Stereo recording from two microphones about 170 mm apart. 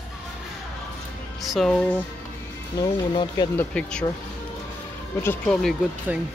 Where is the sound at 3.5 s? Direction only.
5° left (ahead or behind).